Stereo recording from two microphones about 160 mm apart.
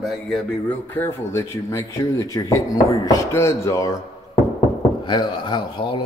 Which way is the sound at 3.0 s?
20° left (ahead or behind).